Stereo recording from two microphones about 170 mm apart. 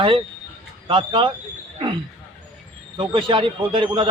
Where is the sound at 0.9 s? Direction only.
30° right (ahead or behind).